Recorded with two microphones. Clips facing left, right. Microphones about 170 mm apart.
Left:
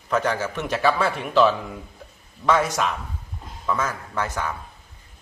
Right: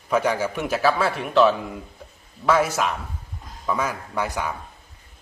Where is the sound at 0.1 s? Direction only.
10° right (ahead or behind).